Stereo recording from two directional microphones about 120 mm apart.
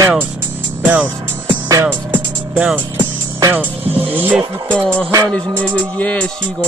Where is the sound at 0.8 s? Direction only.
15° right (ahead or behind).